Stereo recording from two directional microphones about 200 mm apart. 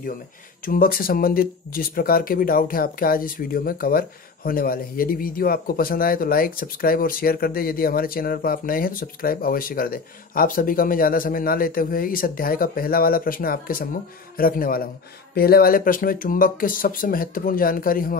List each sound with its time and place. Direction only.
0.7 s speech: 45° left (ahead or behind)